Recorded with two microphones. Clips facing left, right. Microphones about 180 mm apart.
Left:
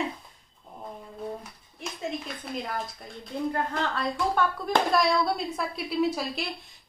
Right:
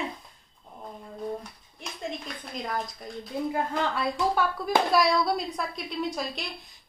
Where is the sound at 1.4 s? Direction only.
5° left (ahead or behind).